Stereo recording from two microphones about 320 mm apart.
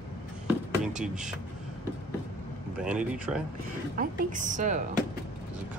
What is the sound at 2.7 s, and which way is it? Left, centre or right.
Speech, centre.